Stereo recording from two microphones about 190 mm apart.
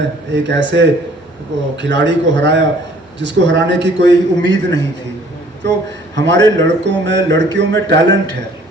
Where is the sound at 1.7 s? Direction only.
70° right (ahead or behind).